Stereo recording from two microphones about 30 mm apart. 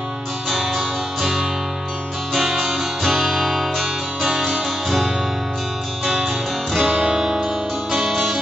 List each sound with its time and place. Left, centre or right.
0.7 s music: centre
2.5 s music: centre